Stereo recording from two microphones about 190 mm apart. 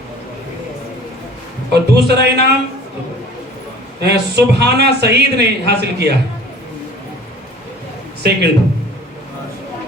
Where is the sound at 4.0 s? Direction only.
60° right (ahead or behind).